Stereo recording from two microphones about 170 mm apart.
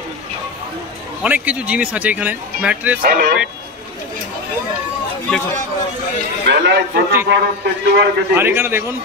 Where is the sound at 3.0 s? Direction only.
65° right (ahead or behind).